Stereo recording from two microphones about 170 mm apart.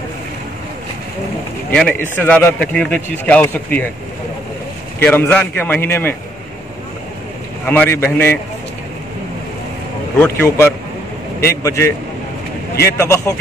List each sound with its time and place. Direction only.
1.7 s a man's voice: 10° left (ahead or behind)
5.0 s a man's voice: 10° left (ahead or behind)
7.6 s a man's voice: 10° left (ahead or behind)
10.2 s a man's voice: 15° left (ahead or behind)
12.9 s a man's voice: 15° left (ahead or behind)